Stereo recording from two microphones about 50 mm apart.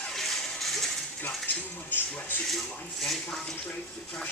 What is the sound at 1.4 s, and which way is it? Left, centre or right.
Speech, left.